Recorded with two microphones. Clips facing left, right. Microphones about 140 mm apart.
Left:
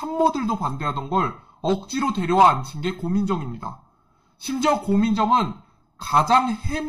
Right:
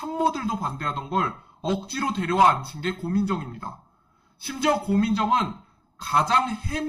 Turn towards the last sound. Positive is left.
turn(degrees=35)  # may be behind; listen again after turning